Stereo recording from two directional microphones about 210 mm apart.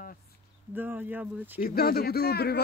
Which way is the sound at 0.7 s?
10° right (ahead or behind).